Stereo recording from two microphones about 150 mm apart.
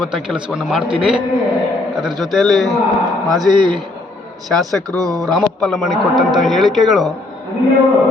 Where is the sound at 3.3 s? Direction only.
30° right (ahead or behind).